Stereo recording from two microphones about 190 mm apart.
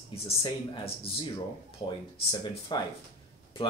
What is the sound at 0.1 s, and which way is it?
Speech, 30° left (ahead or behind).